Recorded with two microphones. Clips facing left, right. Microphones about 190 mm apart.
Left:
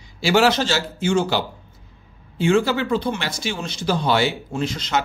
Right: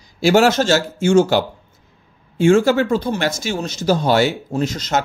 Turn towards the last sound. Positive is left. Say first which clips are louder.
# right 3 dB
turn(degrees=-45)  # may be behind; listen again after turning